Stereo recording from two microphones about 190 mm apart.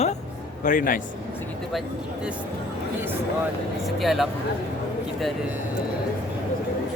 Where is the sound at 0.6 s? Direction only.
45° left (ahead or behind).